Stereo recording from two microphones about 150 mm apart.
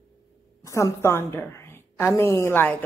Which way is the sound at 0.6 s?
20° left (ahead or behind).